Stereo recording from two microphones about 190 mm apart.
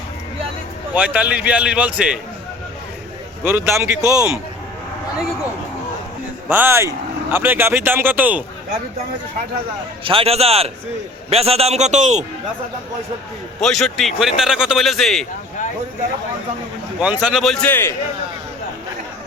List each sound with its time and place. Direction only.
0.9 s speech: 5° right (ahead or behind)
3.4 s speech: 10° right (ahead or behind)
6.5 s speech: 10° right (ahead or behind)
10.0 s a man's voice: 30° right (ahead or behind)
13.6 s a man's voice: centre (ahead or behind)
17.0 s a man's voice: 5° right (ahead or behind); by 17.9 s 10° left (ahead or behind)